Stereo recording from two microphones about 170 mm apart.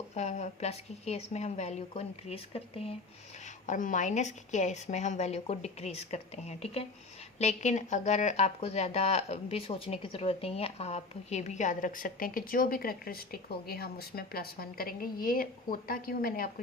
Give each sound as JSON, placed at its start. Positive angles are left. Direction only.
{"t": 0.1, "sound": "speech", "side_deg": 40}
{"t": 3.4, "sound": "speech", "side_deg": 50}